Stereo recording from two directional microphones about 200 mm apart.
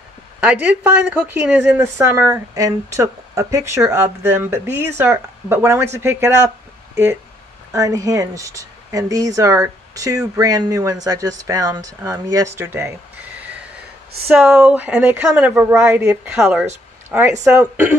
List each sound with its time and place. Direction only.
0.4 s speech: 5° right (ahead or behind)
7.7 s speech: 15° right (ahead or behind)
14.2 s speech: 5° right (ahead or behind)